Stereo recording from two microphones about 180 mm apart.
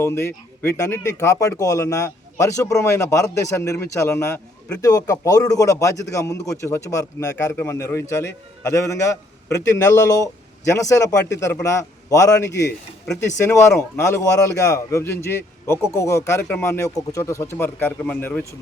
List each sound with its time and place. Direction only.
0.0 s a man's voice: 15° left (ahead or behind)